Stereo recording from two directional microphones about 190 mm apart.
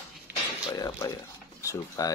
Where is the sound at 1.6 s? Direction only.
20° left (ahead or behind).